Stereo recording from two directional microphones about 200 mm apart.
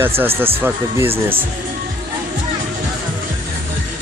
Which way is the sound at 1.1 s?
25° right (ahead or behind).